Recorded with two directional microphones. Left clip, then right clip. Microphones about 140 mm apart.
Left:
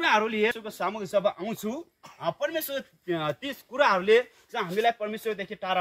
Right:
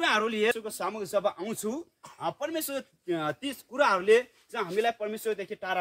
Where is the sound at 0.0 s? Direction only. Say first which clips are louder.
Left 2 dB; 40° right (ahead or behind).